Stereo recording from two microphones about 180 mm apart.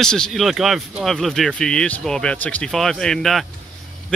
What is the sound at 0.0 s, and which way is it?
Speech, 5° left (ahead or behind).